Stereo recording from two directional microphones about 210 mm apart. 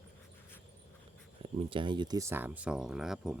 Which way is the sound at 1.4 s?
25° right (ahead or behind).